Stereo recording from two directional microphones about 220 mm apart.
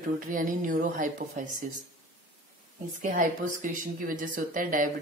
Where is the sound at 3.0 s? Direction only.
35° right (ahead or behind).